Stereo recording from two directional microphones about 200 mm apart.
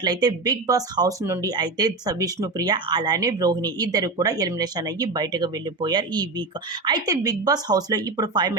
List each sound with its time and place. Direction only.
0.0 s speech: 20° right (ahead or behind)